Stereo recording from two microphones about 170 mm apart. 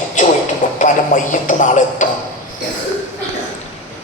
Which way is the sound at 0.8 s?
50° left (ahead or behind).